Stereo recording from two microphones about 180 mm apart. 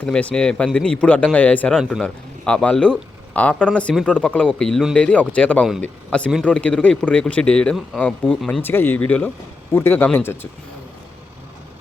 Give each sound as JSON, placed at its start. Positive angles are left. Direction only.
{"t": 0.0, "sound": "a man's voice", "side_deg": 5}